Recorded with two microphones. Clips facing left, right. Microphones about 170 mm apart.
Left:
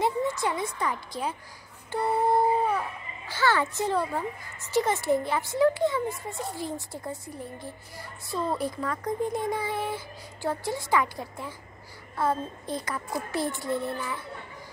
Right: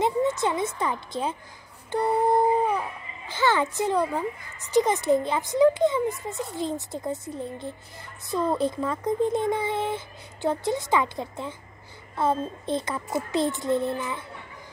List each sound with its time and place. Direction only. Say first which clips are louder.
0.0 s speech: right 3 dB; 20° right (ahead or behind)
1.9 s a sound: right 2 dB; 20° right (ahead or behind)
3.3 s a woman's voice: right 2 dB; 20° right (ahead or behind)